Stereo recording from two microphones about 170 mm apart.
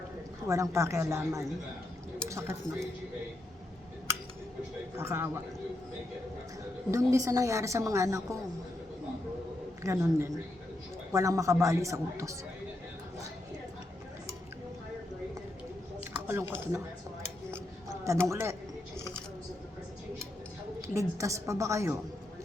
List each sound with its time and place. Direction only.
0.4 s a woman's voice: 20° right (ahead or behind)
4.9 s a woman's voice: 15° right (ahead or behind)
6.9 s a woman's voice: 15° right (ahead or behind)
9.8 s a woman's voice: 15° right (ahead or behind)
16.2 s speech: 10° right (ahead or behind)
17.5 s a sound: 15° right (ahead or behind)
20.8 s a woman's voice: 20° right (ahead or behind)